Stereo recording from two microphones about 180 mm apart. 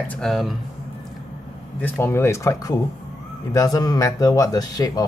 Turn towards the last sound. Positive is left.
turn(degrees=20)  # may be behind; listen again after turning